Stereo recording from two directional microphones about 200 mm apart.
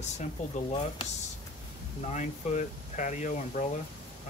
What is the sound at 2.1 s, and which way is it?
Speech, 35° left (ahead or behind).